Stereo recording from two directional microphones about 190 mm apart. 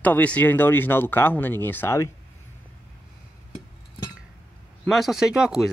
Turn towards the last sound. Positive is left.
turn(degrees=-5)  # may be behind; listen again after turning